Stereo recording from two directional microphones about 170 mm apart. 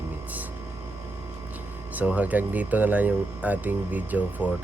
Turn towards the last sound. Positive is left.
turn(degrees=-10)  # may be behind; listen again after turning